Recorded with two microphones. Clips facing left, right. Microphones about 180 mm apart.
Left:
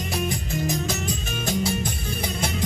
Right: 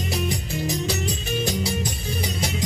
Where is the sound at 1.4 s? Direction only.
55° left (ahead or behind).